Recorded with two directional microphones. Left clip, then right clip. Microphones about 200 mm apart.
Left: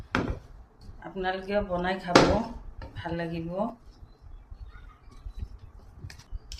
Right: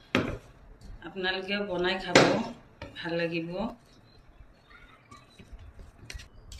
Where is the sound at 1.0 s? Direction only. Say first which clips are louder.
Even; 65° left (ahead or behind).